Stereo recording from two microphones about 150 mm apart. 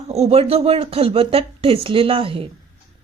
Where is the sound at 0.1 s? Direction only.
45° right (ahead or behind).